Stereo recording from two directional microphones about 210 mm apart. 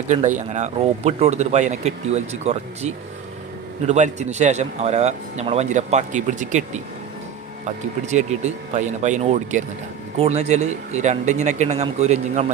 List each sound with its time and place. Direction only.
0.3 s a man's voice: 35° right (ahead or behind)
7.6 s a man's voice: 35° right (ahead or behind)